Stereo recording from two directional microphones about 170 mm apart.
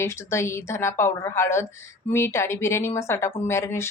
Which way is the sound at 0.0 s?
15° left (ahead or behind).